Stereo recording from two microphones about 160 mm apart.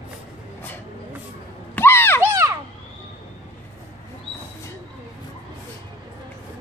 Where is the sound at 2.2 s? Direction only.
20° right (ahead or behind).